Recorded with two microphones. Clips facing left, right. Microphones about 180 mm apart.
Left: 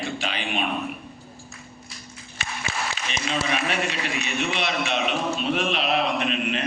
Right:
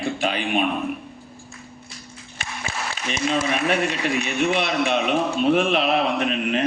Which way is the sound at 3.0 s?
45° right (ahead or behind).